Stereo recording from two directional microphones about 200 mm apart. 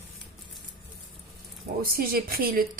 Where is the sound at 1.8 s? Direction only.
50° right (ahead or behind).